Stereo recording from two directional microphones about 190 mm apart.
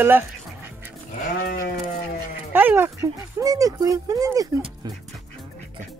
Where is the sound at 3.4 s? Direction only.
15° right (ahead or behind).